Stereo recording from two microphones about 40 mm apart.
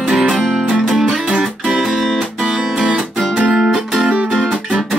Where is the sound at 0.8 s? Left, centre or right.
Centre.